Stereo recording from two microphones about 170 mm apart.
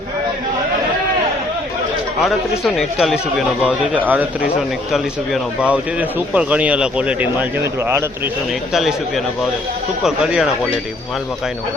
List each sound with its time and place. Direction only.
2.2 s a man's voice: centre (ahead or behind)
8.7 s a man's voice: centre (ahead or behind)